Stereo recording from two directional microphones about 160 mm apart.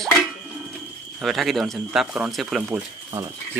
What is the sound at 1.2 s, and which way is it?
Speech, centre (ahead or behind).